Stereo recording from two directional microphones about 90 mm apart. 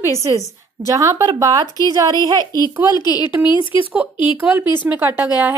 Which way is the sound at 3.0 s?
50° left (ahead or behind).